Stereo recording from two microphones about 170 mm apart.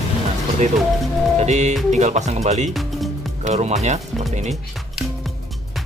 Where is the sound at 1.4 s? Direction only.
40° right (ahead or behind).